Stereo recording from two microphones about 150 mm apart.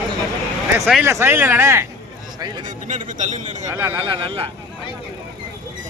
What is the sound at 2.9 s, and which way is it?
Speech, 55° right (ahead or behind).